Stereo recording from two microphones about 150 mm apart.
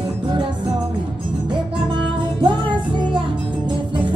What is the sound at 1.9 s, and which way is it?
Music, 30° right (ahead or behind).